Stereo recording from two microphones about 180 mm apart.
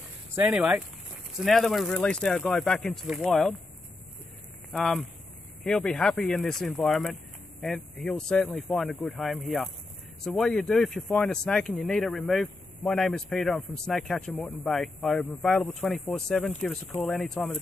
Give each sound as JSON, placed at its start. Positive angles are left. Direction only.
{"t": 0.4, "sound": "speech", "side_deg": -5}
{"t": 4.7, "sound": "speech", "side_deg": 0}